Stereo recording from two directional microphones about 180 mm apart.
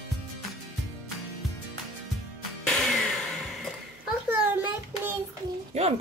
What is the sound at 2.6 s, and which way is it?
Music, 5° left (ahead or behind).